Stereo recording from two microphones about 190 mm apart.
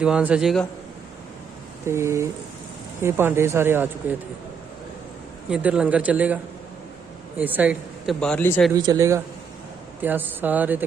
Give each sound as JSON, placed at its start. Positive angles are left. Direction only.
{"t": 0.0, "sound": "a man's voice", "side_deg": -5}
{"t": 1.9, "sound": "a man's voice", "side_deg": -15}
{"t": 5.5, "sound": "a man's voice", "side_deg": -5}
{"t": 8.2, "sound": "speech", "side_deg": 10}
{"t": 8.7, "sound": "a man's voice", "side_deg": -20}